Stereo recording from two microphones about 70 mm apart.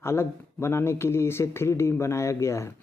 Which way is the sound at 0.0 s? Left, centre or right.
Left.